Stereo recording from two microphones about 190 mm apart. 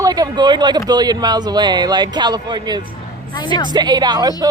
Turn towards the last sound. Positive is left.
turn(degrees=-20)  # may be behind; listen again after turning